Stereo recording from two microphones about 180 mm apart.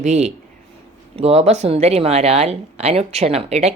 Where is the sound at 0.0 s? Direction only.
40° right (ahead or behind).